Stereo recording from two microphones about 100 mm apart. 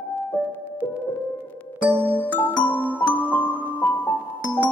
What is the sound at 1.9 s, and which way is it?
Music, 15° left (ahead or behind).